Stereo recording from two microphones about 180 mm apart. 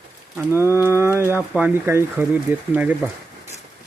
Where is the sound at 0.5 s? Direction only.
15° right (ahead or behind).